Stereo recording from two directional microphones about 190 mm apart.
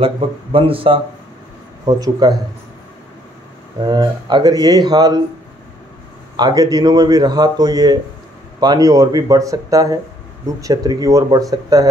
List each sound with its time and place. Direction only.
0.0 s speech: 30° right (ahead or behind)
3.8 s speech: 20° right (ahead or behind)
6.3 s speech: 20° right (ahead or behind)